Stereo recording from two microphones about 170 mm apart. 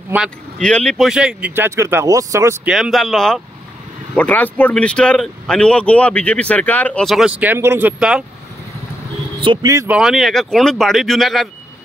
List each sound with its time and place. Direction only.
0.6 s speech: 5° left (ahead or behind); by 2.7 s 15° right (ahead or behind)
2.7 s speech: centre (ahead or behind)
9.4 s speech: 25° right (ahead or behind)
9.8 s speech: 5° right (ahead or behind)